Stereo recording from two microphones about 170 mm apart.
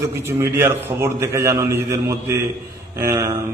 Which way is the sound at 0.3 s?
15° right (ahead or behind).